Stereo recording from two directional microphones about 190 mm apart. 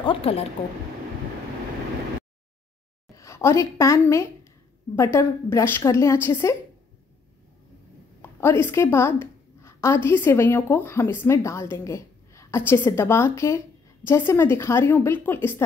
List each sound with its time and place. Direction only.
0.0 s speech: 30° left (ahead or behind)
3.2 s a woman's voice: 15° left (ahead or behind)
8.2 s a woman's voice: 10° left (ahead or behind)